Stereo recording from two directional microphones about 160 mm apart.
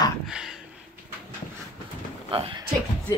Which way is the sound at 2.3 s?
35° right (ahead or behind).